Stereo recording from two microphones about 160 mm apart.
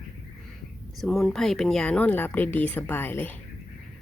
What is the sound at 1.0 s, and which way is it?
A woman's voice, centre (ahead or behind).